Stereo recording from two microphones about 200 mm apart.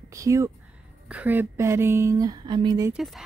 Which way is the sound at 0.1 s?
15° right (ahead or behind).